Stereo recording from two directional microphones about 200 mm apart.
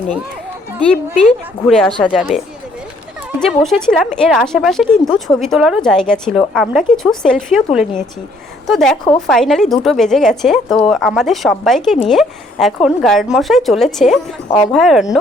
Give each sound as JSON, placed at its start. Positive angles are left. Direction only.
{"t": 0.9, "sound": "a woman's voice", "side_deg": 5}
{"t": 1.9, "sound": "speech", "side_deg": 25}
{"t": 3.4, "sound": "a woman's voice", "side_deg": 0}